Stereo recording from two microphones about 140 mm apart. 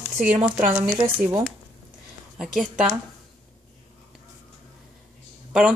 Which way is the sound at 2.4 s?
5° right (ahead or behind).